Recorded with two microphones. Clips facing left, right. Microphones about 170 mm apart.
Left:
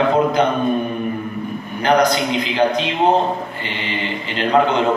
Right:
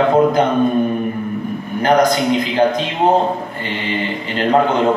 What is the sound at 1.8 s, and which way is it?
A man's voice, 50° right (ahead or behind).